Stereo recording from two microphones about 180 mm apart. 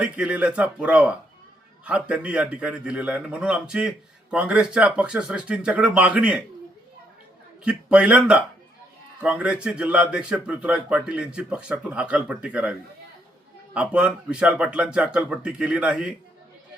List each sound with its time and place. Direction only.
0.0 s a man's voice: 5° right (ahead or behind)
7.6 s a man's voice: 5° right (ahead or behind)
13.7 s a man's voice: 5° right (ahead or behind)